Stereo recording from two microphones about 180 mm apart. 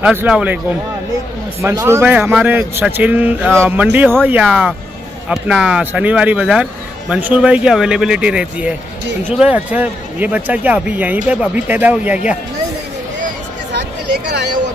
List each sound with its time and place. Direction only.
0.0 s a man's voice: 10° right (ahead or behind)
1.6 s a man's voice: 15° right (ahead or behind)
13.7 s a sound: 70° right (ahead or behind)